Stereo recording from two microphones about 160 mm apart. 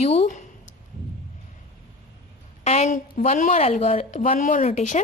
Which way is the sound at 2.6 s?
45° left (ahead or behind).